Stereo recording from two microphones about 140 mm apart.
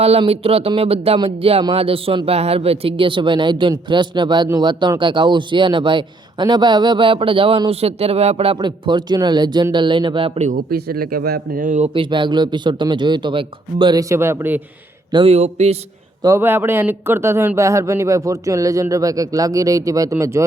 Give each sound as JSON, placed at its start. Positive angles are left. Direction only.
{"t": 0.0, "sound": "a man's voice", "side_deg": -45}
{"t": 10.4, "sound": "speech", "side_deg": -80}
{"t": 11.9, "sound": "a man's voice", "side_deg": -35}
{"t": 14.1, "sound": "a man's voice", "side_deg": -15}
{"t": 15.1, "sound": "speech", "side_deg": -45}
{"t": 16.2, "sound": "speech", "side_deg": -20}